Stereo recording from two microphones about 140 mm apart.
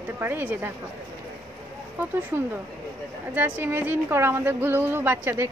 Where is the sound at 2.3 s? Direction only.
15° right (ahead or behind).